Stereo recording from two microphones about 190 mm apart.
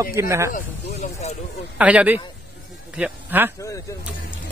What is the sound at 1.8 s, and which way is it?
Speech, 5° right (ahead or behind).